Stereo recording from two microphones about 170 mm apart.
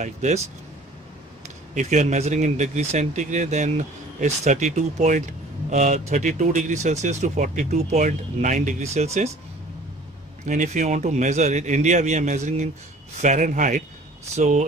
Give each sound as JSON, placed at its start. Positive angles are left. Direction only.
{"t": 0.0, "sound": "speech", "side_deg": -45}
{"t": 1.8, "sound": "speech", "side_deg": -45}
{"t": 10.4, "sound": "speech", "side_deg": -45}